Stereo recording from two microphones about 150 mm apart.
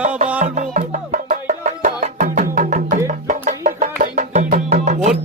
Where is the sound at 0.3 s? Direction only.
60° right (ahead or behind).